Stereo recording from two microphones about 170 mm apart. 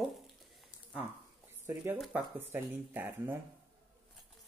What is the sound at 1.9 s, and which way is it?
Speech, 10° right (ahead or behind).